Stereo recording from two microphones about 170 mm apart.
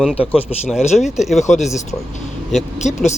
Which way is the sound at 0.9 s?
Centre (ahead or behind).